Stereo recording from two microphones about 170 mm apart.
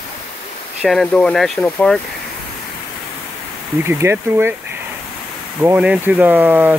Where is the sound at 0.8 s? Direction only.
5° left (ahead or behind).